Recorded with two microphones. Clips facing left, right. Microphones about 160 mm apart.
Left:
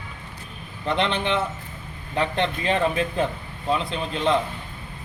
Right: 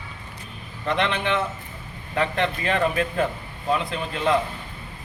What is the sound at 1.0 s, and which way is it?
Speech, 30° left (ahead or behind).